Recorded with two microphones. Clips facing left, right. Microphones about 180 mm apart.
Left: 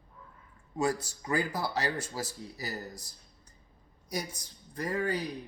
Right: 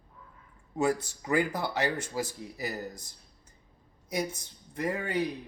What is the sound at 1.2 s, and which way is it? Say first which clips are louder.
Speech: right 3 dB; 20° right (ahead or behind).